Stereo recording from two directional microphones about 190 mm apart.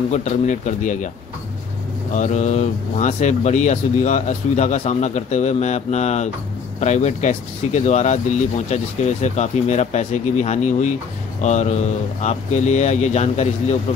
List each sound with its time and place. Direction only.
0.1 s speech: 40° left (ahead or behind)
2.1 s speech: 40° left (ahead or behind)